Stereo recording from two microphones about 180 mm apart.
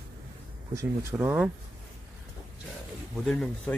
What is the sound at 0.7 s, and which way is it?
Speech, 15° right (ahead or behind).